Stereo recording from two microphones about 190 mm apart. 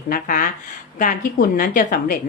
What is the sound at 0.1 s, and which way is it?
Speech, 45° left (ahead or behind).